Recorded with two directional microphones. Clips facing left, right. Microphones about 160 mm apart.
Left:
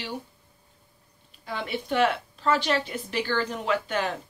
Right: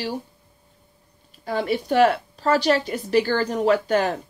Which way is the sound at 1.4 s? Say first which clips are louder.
Right 7 dB; 40° right (ahead or behind).